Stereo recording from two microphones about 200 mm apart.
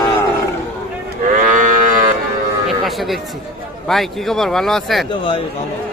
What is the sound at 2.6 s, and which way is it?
Livestock, centre (ahead or behind).